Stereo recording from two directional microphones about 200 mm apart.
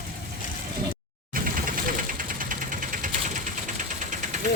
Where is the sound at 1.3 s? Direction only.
45° right (ahead or behind).